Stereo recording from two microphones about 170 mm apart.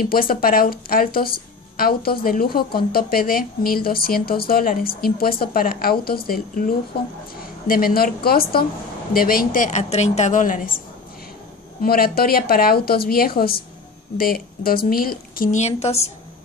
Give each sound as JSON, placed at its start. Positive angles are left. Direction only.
{"t": 0.0, "sound": "a woman's voice", "side_deg": 60}
{"t": 11.8, "sound": "a woman's voice", "side_deg": 60}
{"t": 15.6, "sound": "a woman's voice", "side_deg": 40}